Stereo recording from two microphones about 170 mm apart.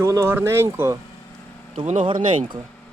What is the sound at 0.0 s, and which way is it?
Speech, 15° right (ahead or behind).